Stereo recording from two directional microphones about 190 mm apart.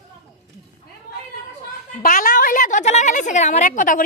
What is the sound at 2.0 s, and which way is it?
A woman's voice, 45° left (ahead or behind).